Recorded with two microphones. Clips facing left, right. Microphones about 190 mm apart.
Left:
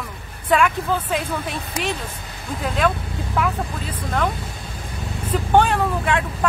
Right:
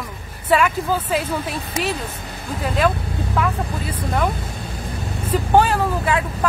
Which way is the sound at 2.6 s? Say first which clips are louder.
Right 2 dB; centre (ahead or behind).